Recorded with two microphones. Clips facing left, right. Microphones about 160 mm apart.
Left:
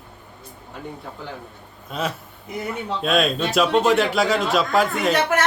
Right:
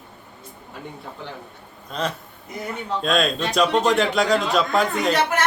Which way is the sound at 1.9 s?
5° left (ahead or behind).